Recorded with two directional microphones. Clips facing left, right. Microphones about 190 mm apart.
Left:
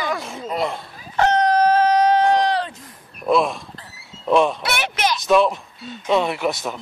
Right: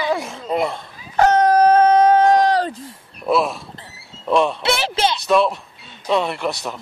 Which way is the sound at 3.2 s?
5° right (ahead or behind).